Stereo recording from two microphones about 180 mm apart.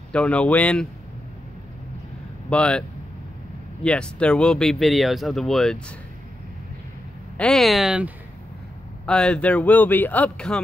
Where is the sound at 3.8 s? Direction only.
5° left (ahead or behind).